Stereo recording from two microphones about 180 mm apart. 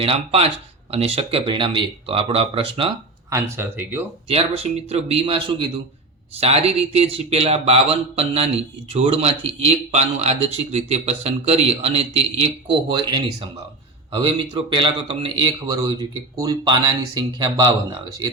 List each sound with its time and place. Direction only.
0.0 s a man's voice: 30° right (ahead or behind)
3.2 s speech: 15° right (ahead or behind)
4.3 s a man's voice: 35° right (ahead or behind)